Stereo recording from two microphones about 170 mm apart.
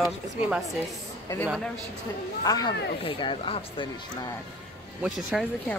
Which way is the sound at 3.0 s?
30° left (ahead or behind).